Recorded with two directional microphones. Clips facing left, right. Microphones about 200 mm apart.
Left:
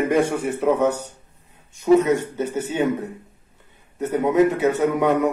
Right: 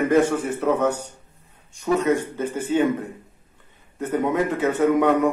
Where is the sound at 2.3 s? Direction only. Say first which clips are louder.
Right 2 dB; 20° left (ahead or behind).